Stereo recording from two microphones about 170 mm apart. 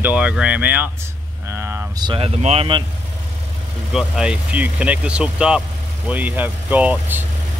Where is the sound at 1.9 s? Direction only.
30° right (ahead or behind).